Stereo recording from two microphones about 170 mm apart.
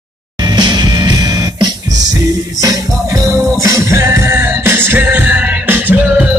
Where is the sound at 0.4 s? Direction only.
25° right (ahead or behind).